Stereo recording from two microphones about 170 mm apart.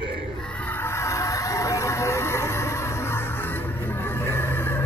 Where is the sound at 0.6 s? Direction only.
10° left (ahead or behind).